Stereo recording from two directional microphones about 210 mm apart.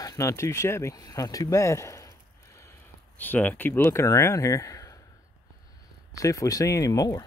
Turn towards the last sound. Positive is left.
turn(degrees=15)  # may be behind; listen again after turning